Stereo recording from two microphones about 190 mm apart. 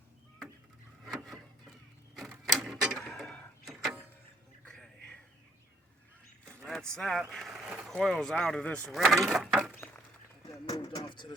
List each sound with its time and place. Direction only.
1.0 s a sound: centre (ahead or behind)
2.1 s camera: centre (ahead or behind)
2.6 s printer: 5° right (ahead or behind)
4.6 s a sound: 5° left (ahead or behind)
6.7 s speech: centre (ahead or behind)
10.7 s speech: 25° left (ahead or behind)